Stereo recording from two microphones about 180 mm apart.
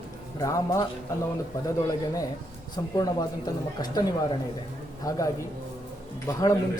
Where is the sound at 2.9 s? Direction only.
20° left (ahead or behind).